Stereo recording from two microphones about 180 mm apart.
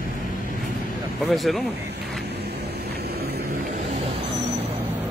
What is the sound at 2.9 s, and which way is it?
Vehicle, 60° right (ahead or behind).